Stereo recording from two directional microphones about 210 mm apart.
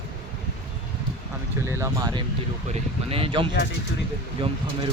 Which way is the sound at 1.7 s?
15° right (ahead or behind).